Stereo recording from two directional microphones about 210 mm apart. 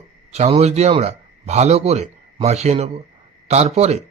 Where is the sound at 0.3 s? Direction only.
30° right (ahead or behind).